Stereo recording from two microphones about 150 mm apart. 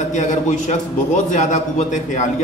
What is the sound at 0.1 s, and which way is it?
A man's voice, 50° left (ahead or behind).